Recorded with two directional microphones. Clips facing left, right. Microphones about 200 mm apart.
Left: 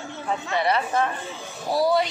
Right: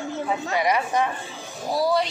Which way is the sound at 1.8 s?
Centre (ahead or behind).